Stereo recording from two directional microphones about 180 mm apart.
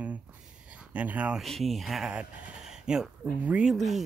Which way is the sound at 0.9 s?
10° right (ahead or behind).